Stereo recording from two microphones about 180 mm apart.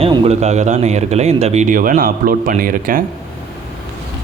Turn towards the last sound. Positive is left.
turn(degrees=-50)  # may be behind; listen again after turning